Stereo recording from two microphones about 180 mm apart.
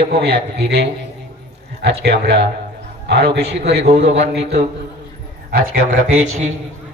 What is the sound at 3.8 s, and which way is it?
Speech, 35° right (ahead or behind).